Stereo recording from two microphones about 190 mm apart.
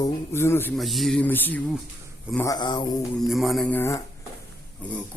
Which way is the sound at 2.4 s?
20° left (ahead or behind).